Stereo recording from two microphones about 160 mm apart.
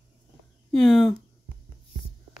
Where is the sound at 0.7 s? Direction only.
Centre (ahead or behind).